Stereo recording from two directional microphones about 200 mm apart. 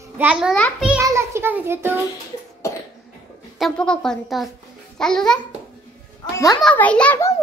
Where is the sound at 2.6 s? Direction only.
15° left (ahead or behind).